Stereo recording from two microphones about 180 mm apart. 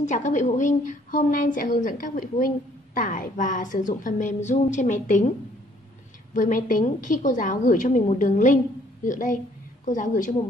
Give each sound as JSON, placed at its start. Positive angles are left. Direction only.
{"t": 0.0, "sound": "a woman's voice", "side_deg": 45}
{"t": 6.3, "sound": "a woman's voice", "side_deg": 45}